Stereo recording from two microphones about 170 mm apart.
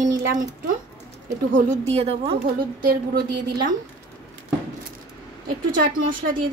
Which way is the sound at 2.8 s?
60° right (ahead or behind).